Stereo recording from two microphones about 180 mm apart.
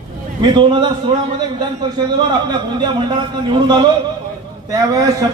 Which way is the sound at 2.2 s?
25° right (ahead or behind).